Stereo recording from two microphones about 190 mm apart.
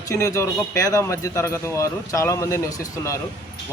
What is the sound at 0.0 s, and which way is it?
Speech, 15° left (ahead or behind).